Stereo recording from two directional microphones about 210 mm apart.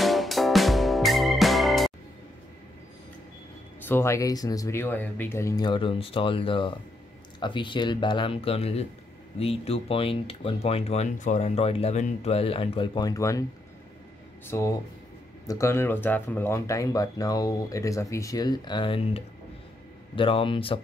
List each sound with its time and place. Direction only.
0.0 s music: centre (ahead or behind)
3.8 s speech: 10° left (ahead or behind)
14.5 s speech: 15° left (ahead or behind)